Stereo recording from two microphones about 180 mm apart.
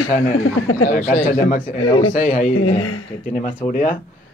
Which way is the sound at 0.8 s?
45° left (ahead or behind).